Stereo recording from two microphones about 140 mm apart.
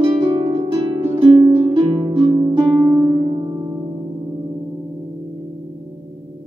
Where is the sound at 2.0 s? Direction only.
40° right (ahead or behind).